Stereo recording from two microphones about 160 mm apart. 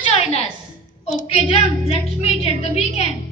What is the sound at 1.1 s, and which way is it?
Child singing, 45° left (ahead or behind).